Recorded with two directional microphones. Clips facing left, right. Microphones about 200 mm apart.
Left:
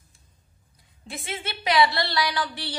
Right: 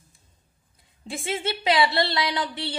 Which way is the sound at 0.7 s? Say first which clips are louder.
Right 4 dB; 25° right (ahead or behind).